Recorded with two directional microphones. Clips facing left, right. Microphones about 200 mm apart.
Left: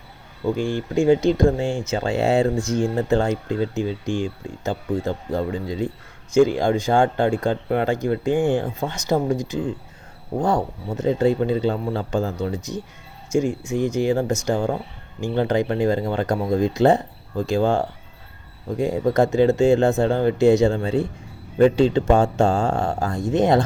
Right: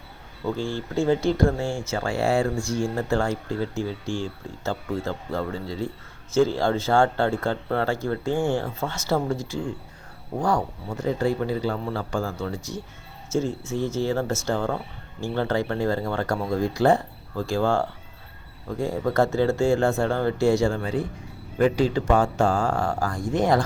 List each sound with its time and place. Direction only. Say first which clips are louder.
0.4 s speech: left 5 dB; 15° left (ahead or behind)